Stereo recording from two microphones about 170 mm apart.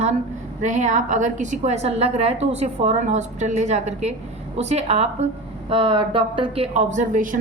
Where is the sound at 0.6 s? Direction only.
45° right (ahead or behind).